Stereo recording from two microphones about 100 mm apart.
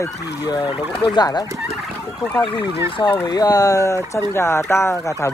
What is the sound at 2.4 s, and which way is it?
Fowl, 60° left (ahead or behind).